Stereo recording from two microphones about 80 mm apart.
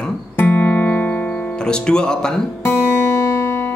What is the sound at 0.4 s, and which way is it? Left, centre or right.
Music, centre.